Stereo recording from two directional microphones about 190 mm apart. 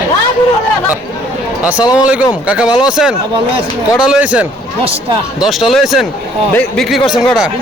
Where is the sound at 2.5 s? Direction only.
5° right (ahead or behind).